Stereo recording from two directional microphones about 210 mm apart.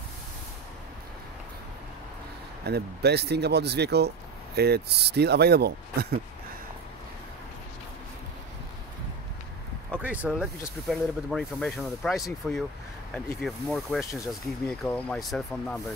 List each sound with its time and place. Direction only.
2.6 s speech: 50° right (ahead or behind)
9.9 s speech: 10° right (ahead or behind)